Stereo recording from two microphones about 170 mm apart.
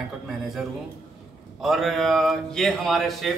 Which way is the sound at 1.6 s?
Centre (ahead or behind).